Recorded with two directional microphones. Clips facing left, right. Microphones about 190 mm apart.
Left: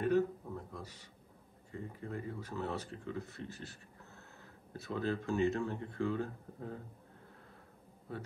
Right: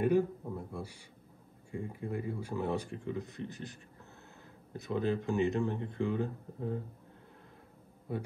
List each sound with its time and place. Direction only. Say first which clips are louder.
0.0 s a sound: right 3 dB; 10° right (ahead or behind)
1.7 s speech: right 5 dB; 10° right (ahead or behind)
4.7 s speech: right 4 dB; 15° right (ahead or behind)
8.1 s speech: right 6 dB; 15° right (ahead or behind)